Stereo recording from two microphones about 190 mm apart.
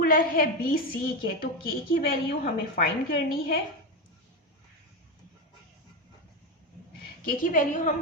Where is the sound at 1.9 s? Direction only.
55° left (ahead or behind).